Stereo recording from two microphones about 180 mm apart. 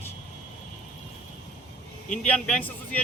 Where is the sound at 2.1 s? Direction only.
5° left (ahead or behind).